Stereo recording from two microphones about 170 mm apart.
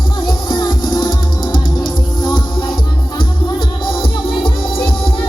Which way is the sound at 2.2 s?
30° left (ahead or behind).